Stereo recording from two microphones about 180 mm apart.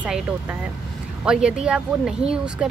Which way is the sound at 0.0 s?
10° right (ahead or behind).